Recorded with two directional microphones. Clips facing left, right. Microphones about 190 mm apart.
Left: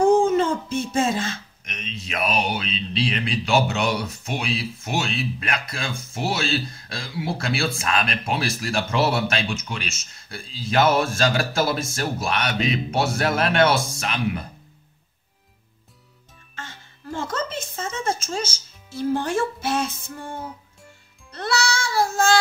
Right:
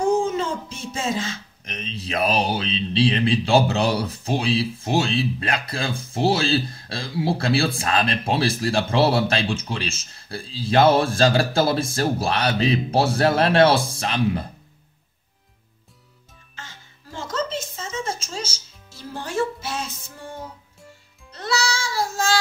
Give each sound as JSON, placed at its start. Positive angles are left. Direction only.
{"t": 0.2, "sound": "a sound", "side_deg": 55}
{"t": 1.6, "sound": "speech", "side_deg": -30}
{"t": 16.5, "sound": "music", "side_deg": 55}
{"t": 21.3, "sound": "music", "side_deg": 55}